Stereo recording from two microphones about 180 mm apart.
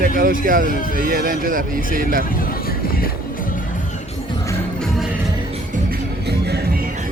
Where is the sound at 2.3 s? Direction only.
55° left (ahead or behind).